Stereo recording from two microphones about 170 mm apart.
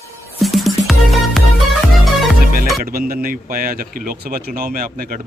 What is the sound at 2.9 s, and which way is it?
A man's voice, 60° right (ahead or behind).